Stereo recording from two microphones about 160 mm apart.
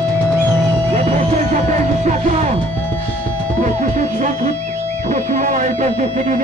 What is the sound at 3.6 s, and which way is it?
Music, 50° right (ahead or behind).